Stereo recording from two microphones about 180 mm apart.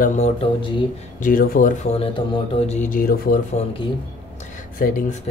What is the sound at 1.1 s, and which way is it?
Speech, 50° left (ahead or behind).